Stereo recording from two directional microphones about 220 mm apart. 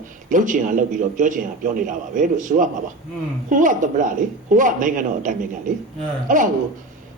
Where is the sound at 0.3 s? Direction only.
35° right (ahead or behind).